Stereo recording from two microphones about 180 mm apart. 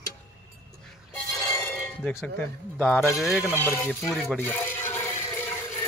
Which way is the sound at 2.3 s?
5° left (ahead or behind).